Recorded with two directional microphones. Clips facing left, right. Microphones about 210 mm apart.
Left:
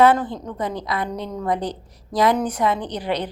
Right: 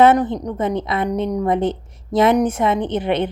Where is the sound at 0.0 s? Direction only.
20° right (ahead or behind).